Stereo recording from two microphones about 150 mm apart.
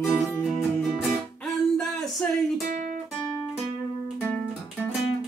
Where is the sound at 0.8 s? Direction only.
Centre (ahead or behind).